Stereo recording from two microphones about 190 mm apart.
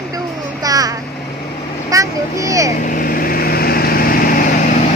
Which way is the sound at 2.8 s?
45° left (ahead or behind).